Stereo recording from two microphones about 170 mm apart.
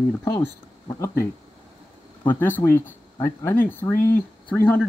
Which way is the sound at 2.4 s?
10° left (ahead or behind).